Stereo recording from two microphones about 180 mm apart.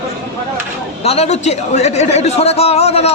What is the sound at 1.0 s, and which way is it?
A man's voice, 35° left (ahead or behind).